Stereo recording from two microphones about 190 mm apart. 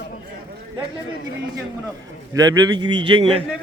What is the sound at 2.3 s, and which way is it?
A man's voice, 20° right (ahead or behind).